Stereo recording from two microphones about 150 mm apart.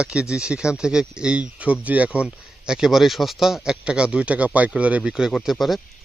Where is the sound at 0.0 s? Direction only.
5° right (ahead or behind).